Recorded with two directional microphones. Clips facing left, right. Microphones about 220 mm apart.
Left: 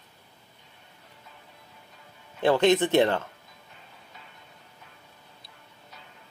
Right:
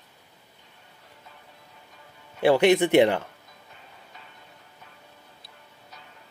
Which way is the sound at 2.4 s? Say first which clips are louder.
Right 2 dB; 10° right (ahead or behind).